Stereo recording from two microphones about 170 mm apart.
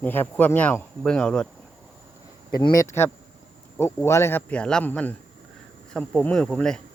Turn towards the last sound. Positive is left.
turn(degrees=5)  # may be behind; listen again after turning